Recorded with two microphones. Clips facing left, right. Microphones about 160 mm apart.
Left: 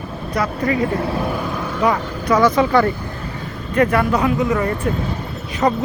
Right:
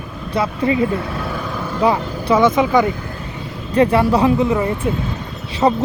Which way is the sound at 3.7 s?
30° right (ahead or behind).